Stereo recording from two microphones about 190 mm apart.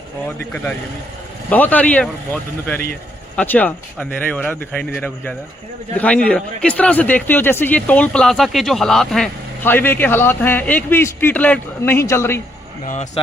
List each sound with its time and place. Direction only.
0.3 s speech: 10° left (ahead or behind)
12.8 s speech: 40° left (ahead or behind)